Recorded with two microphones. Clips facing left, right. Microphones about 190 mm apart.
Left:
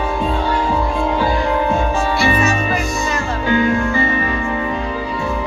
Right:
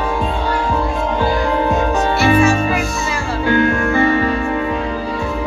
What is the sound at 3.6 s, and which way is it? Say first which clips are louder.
Music: right 2 dB; 60° right (ahead or behind).